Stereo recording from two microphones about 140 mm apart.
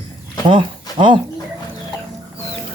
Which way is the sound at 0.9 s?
35° right (ahead or behind).